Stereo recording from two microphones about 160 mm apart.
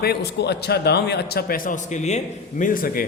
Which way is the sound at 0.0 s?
85° left.